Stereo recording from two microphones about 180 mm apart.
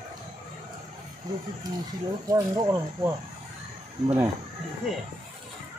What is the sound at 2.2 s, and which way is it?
Speech, 20° right (ahead or behind).